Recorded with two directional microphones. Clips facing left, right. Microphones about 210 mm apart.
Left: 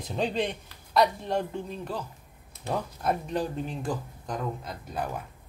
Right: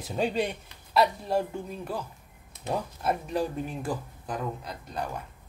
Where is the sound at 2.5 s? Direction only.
15° right (ahead or behind).